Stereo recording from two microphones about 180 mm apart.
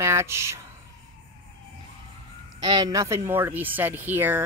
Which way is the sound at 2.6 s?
20° right (ahead or behind).